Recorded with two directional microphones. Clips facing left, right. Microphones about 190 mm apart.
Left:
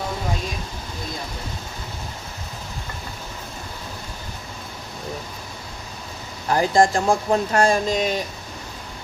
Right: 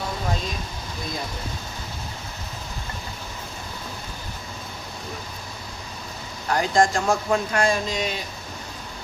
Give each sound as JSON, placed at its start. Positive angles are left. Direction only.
{"t": 6.5, "sound": "speech", "side_deg": 30}